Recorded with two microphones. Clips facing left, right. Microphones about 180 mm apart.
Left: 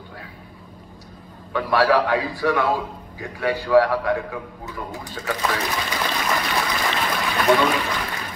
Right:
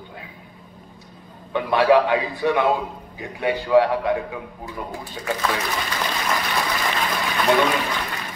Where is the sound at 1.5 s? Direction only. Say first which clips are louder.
Right 2 dB; 20° right (ahead or behind).